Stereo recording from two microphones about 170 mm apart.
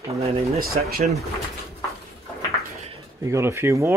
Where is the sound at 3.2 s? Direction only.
15° right (ahead or behind).